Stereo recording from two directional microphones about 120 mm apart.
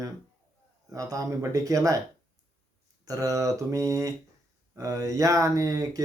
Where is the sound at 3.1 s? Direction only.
30° right (ahead or behind).